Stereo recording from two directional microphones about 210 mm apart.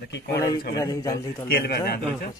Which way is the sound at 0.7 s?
15° left (ahead or behind).